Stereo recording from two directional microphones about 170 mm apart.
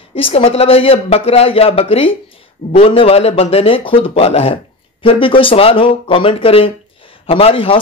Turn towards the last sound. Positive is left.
turn(degrees=30)  # may be behind; listen again after turning